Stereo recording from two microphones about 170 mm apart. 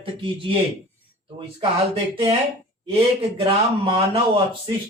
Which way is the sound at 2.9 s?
30° right (ahead or behind).